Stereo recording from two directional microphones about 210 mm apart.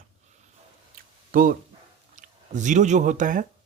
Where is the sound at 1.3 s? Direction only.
40° right (ahead or behind).